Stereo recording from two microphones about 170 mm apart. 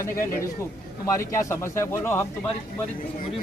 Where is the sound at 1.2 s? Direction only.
15° left (ahead or behind).